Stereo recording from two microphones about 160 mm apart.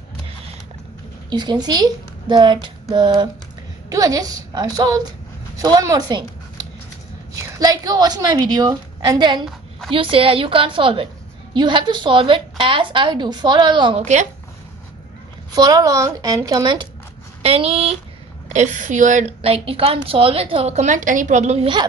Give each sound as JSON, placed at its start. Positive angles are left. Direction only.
{"t": 1.3, "sound": "a woman's voice", "side_deg": -25}
{"t": 7.5, "sound": "a woman's voice", "side_deg": -20}
{"t": 15.5, "sound": "a woman's voice", "side_deg": -25}
{"t": 18.5, "sound": "a woman's voice", "side_deg": -45}
{"t": 19.4, "sound": "a woman's voice", "side_deg": -35}